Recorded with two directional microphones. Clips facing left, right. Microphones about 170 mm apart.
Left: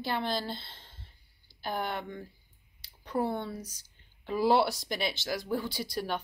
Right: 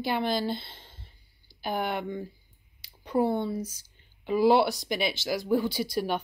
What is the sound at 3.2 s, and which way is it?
Speech, 5° right (ahead or behind).